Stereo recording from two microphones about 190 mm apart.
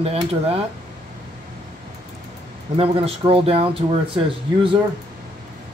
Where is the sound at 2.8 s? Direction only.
30° right (ahead or behind).